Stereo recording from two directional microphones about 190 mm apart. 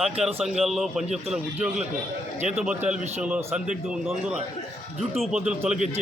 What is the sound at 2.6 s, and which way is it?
A man's voice, 5° right (ahead or behind).